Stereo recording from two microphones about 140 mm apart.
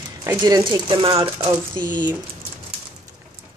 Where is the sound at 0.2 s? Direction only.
25° right (ahead or behind).